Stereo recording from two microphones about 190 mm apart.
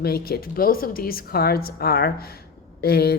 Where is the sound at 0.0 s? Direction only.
55° left (ahead or behind).